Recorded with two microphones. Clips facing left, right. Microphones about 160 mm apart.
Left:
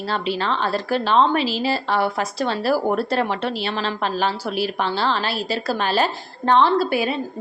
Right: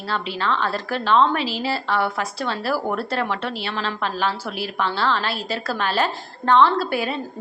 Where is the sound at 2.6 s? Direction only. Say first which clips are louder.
Left 5 dB; 35° left (ahead or behind).